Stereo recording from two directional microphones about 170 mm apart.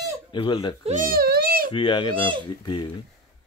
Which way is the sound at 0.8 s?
45° right (ahead or behind).